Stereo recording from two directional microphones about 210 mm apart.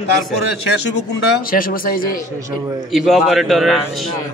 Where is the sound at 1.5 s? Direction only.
45° left (ahead or behind).